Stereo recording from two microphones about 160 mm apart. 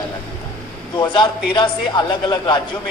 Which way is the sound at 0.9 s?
30° left (ahead or behind).